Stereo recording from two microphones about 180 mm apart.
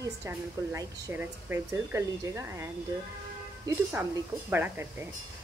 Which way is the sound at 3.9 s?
10° right (ahead or behind).